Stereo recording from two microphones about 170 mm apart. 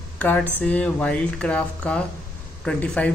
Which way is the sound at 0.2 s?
10° left (ahead or behind).